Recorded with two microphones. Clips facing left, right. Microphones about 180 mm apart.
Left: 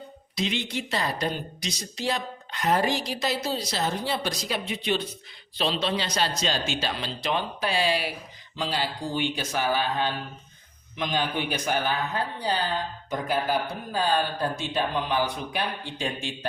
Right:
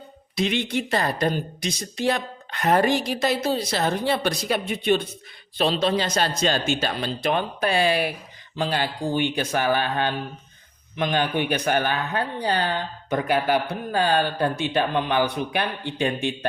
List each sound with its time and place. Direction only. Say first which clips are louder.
0.3 s speech: right 5 dB; 55° right (ahead or behind)